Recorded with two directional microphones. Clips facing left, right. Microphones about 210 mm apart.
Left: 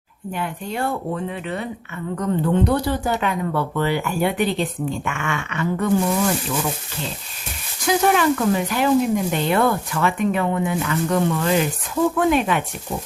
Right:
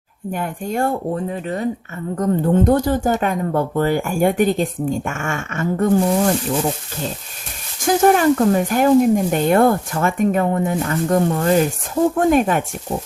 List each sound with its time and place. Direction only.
0.3 s speech: 45° right (ahead or behind)
7.9 s speech: 45° right (ahead or behind)